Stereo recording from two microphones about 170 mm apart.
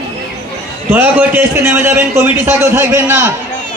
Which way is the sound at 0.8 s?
15° right (ahead or behind).